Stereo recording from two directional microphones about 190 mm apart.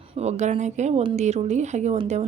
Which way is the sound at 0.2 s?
35° right (ahead or behind).